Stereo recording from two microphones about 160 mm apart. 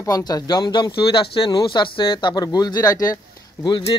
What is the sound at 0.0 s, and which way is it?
Speech, 20° left (ahead or behind).